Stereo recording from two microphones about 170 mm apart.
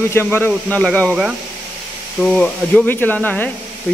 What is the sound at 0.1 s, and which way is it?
Speech, 10° left (ahead or behind).